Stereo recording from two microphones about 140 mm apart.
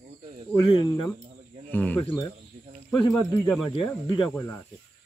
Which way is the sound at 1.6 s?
10° left (ahead or behind).